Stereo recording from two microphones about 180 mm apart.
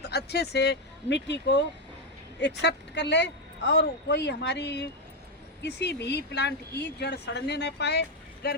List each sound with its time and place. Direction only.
0.0 s a woman's voice: 65° left (ahead or behind)